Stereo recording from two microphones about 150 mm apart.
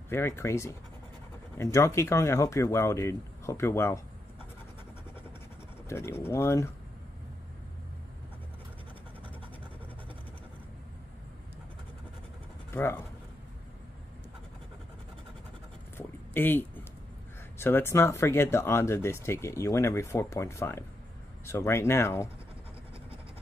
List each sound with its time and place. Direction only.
0.1 s speech: 15° left (ahead or behind)
5.9 s speech: 15° left (ahead or behind)
12.7 s speech: 15° left (ahead or behind)
16.0 s a sound: 15° left (ahead or behind)
17.6 s speech: 15° left (ahead or behind)